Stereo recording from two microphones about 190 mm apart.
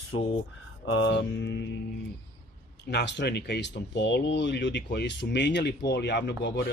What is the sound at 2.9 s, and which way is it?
Speech, 65° left (ahead or behind).